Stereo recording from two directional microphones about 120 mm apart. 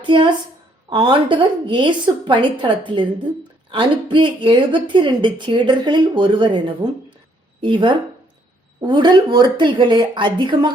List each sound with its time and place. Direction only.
0.0 s a woman's voice: 45° right (ahead or behind)